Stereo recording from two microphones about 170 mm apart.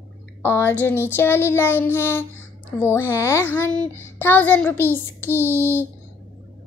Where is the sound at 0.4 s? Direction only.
10° left (ahead or behind).